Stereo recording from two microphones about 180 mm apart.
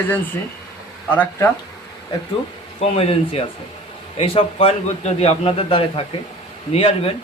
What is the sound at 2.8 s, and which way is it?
A man's voice, 35° left (ahead or behind).